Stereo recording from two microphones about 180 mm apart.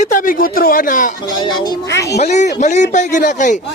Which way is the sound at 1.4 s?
25° left (ahead or behind).